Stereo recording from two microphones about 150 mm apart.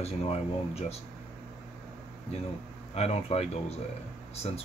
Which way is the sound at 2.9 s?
45° left (ahead or behind).